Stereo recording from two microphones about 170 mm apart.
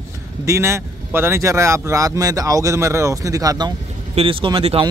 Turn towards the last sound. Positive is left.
turn(degrees=-30)  # may be behind; listen again after turning